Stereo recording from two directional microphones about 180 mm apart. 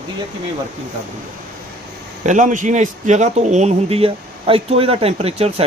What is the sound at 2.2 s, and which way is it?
A man's voice, 45° right (ahead or behind).